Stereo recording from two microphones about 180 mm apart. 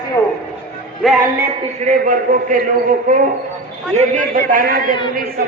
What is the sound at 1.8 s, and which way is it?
Speech, 45° right (ahead or behind).